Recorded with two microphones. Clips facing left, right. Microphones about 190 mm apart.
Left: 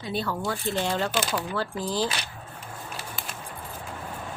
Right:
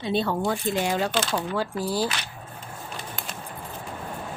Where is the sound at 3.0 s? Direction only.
5° left (ahead or behind).